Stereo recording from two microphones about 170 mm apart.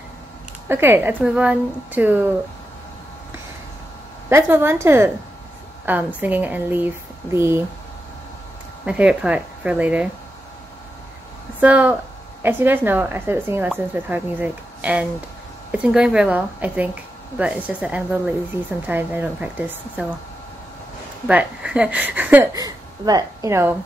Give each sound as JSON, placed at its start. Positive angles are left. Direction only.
{"t": 0.7, "sound": "speech", "side_deg": -15}
{"t": 4.3, "sound": "speech", "side_deg": -15}
{"t": 6.1, "sound": "speech", "side_deg": -10}
{"t": 8.8, "sound": "speech", "side_deg": -5}
{"t": 11.6, "sound": "speech", "side_deg": -10}
{"t": 21.3, "sound": "speech", "side_deg": -5}
{"t": 22.5, "sound": "speech", "side_deg": -20}